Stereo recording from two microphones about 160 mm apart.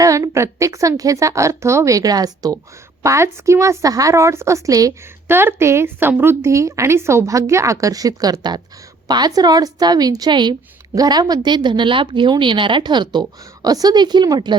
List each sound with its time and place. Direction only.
0.0 s a woman's voice: 20° right (ahead or behind)